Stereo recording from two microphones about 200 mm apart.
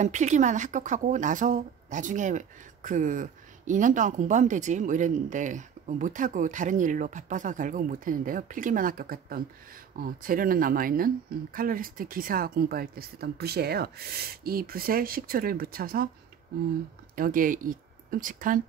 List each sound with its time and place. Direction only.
0.0 s speech: 35° right (ahead or behind)
17.1 s speech: 40° right (ahead or behind)